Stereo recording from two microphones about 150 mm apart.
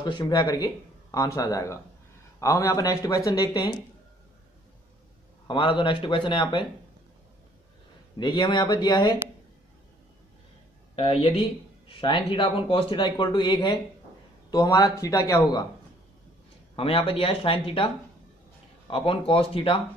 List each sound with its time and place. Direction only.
0.0 s speech: 30° left (ahead or behind)
5.5 s speech: 30° left (ahead or behind)
8.2 s speech: 30° left (ahead or behind)
11.0 s speech: 40° left (ahead or behind); by 15.6 s 25° left (ahead or behind)
16.7 s speech: 40° left (ahead or behind)